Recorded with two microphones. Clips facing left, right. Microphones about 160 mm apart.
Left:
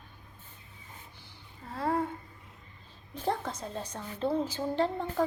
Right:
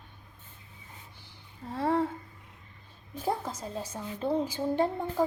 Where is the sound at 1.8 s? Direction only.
25° right (ahead or behind).